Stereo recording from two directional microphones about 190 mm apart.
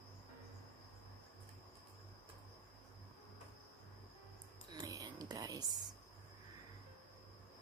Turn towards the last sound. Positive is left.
turn(degrees=-20)  # may be behind; listen again after turning